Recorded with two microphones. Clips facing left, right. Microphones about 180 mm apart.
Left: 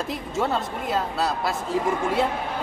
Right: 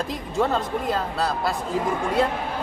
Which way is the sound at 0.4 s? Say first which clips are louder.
Right 3 dB; centre (ahead or behind).